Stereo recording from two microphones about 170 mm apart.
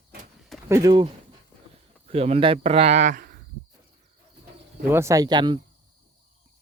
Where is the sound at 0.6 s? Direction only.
20° right (ahead or behind).